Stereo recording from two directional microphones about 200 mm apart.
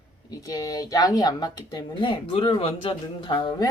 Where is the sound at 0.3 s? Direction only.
15° left (ahead or behind).